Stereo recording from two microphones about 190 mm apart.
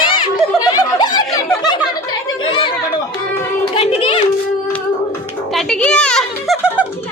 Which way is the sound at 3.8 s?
30° left (ahead or behind).